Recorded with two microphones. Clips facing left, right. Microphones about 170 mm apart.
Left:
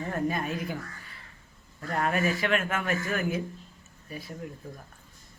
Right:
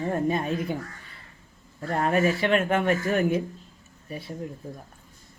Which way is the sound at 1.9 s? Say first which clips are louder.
Right 4 dB; 35° right (ahead or behind).